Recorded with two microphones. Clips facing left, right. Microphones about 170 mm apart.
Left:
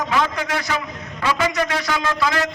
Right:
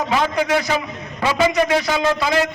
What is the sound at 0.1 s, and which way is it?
A man's voice, 20° right (ahead or behind).